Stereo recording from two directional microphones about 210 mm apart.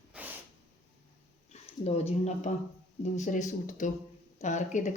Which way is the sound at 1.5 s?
30° left (ahead or behind).